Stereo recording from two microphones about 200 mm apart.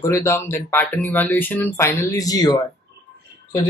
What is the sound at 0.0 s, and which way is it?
Speech, 15° left (ahead or behind).